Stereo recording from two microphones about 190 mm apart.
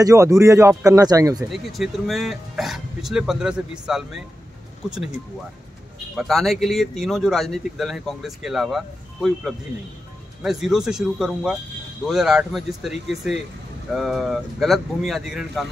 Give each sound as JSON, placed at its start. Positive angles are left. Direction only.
{"t": 0.0, "sound": "a man's voice", "side_deg": -15}
{"t": 1.5, "sound": "speech", "side_deg": 0}
{"t": 6.1, "sound": "speech", "side_deg": 0}